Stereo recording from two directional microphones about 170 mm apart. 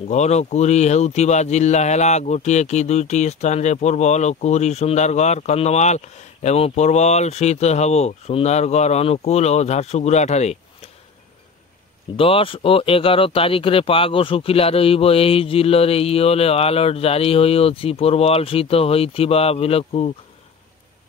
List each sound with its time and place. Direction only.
0.1 s speech: 40° left (ahead or behind)
12.2 s speech: 30° left (ahead or behind)